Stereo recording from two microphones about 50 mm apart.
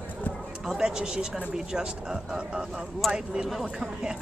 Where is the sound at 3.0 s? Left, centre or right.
Centre.